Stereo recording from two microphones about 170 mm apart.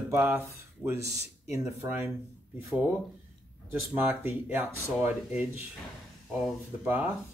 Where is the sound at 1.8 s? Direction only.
10° right (ahead or behind).